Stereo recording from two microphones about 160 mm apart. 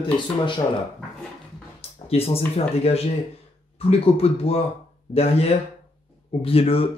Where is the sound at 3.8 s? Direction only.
35° left (ahead or behind).